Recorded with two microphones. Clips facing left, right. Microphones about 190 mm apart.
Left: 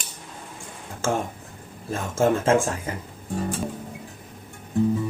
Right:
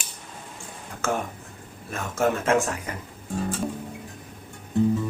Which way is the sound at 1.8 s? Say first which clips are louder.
Left 3 dB; 25° left (ahead or behind).